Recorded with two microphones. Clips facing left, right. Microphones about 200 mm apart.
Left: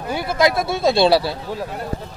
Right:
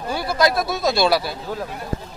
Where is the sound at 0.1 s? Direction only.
20° left (ahead or behind).